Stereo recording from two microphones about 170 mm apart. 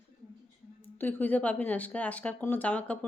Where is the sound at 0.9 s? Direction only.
10° left (ahead or behind).